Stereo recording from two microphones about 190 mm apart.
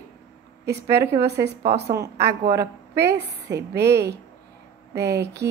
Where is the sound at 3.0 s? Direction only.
60° right (ahead or behind).